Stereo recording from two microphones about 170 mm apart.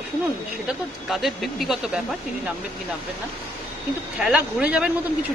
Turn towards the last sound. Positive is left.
turn(degrees=-5)  # may be behind; listen again after turning